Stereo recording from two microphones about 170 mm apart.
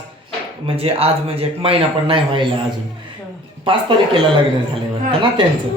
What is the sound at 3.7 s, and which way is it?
Speech, 30° right (ahead or behind).